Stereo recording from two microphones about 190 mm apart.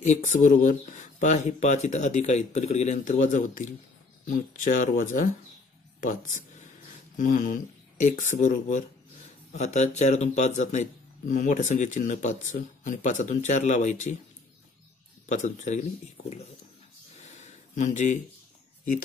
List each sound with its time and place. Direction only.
0.0 s a man's voice: 40° left (ahead or behind)
15.2 s a man's voice: 40° left (ahead or behind)
17.3 s a sound: 40° left (ahead or behind)